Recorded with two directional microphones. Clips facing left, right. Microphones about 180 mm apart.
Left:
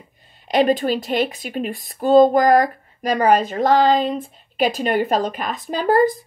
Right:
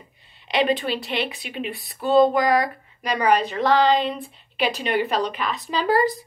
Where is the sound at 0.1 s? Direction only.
45° left (ahead or behind).